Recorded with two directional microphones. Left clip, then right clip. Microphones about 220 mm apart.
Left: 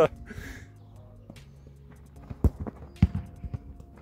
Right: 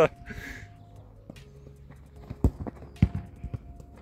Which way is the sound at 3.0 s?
5° left (ahead or behind).